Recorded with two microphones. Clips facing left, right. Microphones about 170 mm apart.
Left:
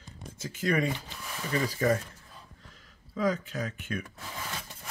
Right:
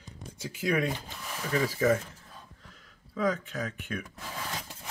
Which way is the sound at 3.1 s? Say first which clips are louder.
Even; centre (ahead or behind).